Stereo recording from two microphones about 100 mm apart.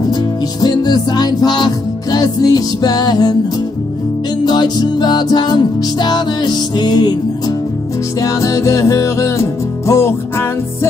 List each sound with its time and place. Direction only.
0.1 s music: 45° left (ahead or behind)
4.5 s music: 45° left (ahead or behind)
8.2 s music: 35° left (ahead or behind)